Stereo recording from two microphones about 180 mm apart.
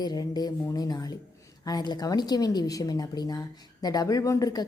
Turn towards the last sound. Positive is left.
turn(degrees=20)  # may be behind; listen again after turning